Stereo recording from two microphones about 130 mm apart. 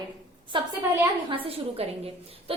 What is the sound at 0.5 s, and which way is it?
A woman's voice, 40° right (ahead or behind).